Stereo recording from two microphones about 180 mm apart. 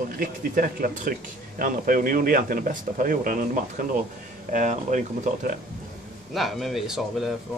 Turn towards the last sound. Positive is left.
turn(degrees=0)  # may be behind; listen again after turning